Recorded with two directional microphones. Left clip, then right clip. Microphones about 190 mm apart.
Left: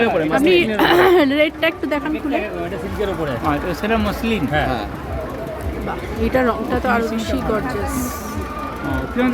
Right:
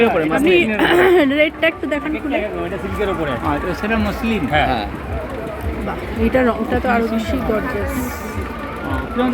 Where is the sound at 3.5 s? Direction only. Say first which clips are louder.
Left 3 dB; 60° left (ahead or behind).